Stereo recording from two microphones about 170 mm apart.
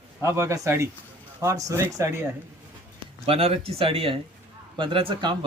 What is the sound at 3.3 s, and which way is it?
Speech, 35° right (ahead or behind).